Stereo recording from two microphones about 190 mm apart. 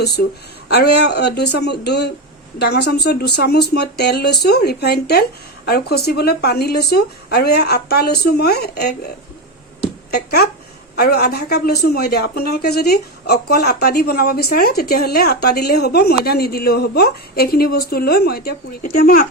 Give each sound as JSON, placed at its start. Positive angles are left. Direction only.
{"t": 0.7, "sound": "a woman's voice", "side_deg": 60}
{"t": 10.1, "sound": "a woman's voice", "side_deg": 60}